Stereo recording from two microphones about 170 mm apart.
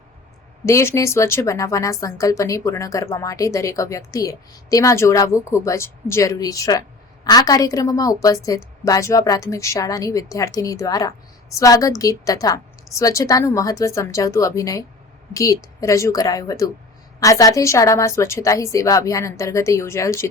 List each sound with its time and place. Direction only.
0.6 s a woman's voice: 15° left (ahead or behind)